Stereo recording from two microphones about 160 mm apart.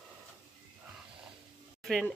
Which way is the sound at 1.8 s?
Centre (ahead or behind).